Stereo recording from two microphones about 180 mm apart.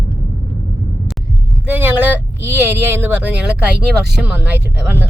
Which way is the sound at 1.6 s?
10° right (ahead or behind).